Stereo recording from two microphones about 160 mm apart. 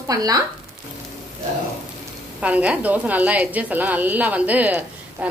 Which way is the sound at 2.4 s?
10° right (ahead or behind).